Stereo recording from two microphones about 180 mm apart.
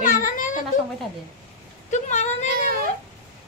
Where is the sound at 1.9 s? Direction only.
40° left (ahead or behind).